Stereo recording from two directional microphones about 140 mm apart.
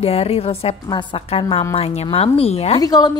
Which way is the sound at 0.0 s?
45° left (ahead or behind).